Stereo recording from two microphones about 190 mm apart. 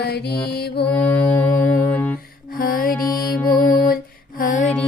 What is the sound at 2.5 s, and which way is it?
Music, 50° left (ahead or behind).